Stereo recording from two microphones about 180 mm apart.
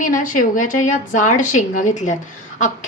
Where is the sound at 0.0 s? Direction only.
50° left (ahead or behind).